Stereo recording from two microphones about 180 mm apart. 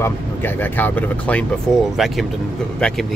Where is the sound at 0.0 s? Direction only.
10° left (ahead or behind).